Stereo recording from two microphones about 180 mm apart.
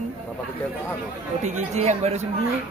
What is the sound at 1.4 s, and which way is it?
Speech, 40° right (ahead or behind).